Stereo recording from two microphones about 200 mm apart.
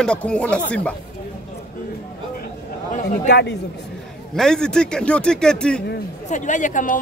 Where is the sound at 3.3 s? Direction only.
60° left (ahead or behind).